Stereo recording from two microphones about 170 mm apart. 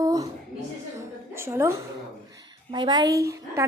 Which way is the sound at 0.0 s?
20° right (ahead or behind).